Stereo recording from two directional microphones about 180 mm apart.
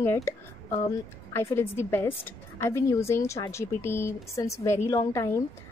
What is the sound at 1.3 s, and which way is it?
A woman's voice, 15° left (ahead or behind).